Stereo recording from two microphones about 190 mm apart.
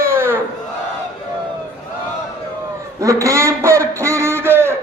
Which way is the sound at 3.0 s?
15° right (ahead or behind).